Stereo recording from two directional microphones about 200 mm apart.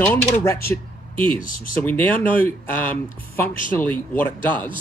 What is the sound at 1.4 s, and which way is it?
Speech, 45° left (ahead or behind).